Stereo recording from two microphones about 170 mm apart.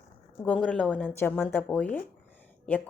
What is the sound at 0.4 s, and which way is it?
Speech, 5° left (ahead or behind).